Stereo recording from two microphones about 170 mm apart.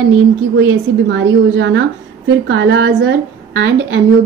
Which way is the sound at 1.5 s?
90° right.